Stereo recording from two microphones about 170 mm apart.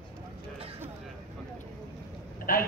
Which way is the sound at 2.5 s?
55° left (ahead or behind).